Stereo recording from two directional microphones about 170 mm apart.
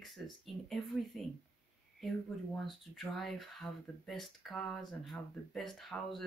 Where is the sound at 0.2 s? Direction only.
5° left (ahead or behind).